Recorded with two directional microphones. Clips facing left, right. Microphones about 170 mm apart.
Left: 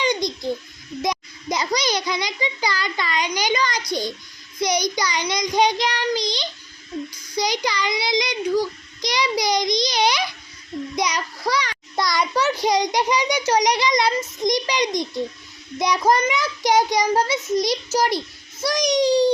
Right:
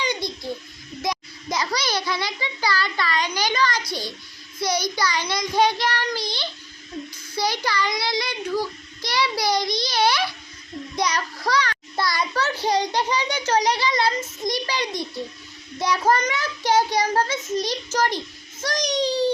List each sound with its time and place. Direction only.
0.0 s babbling: 15° left (ahead or behind)
1.0 s a child's voice: 20° left (ahead or behind)